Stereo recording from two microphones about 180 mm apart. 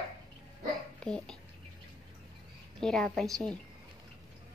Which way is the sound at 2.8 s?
5° left (ahead or behind).